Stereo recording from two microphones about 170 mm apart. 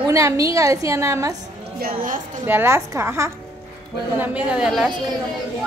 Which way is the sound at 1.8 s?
60° right (ahead or behind).